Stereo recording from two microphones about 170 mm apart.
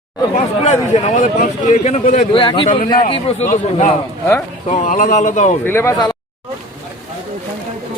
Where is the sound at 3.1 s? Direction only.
35° left (ahead or behind).